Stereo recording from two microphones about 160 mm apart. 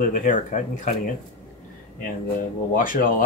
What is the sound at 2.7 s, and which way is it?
Speech, 60° left (ahead or behind).